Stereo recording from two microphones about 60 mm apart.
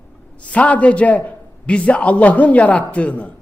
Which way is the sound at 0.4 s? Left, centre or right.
Left.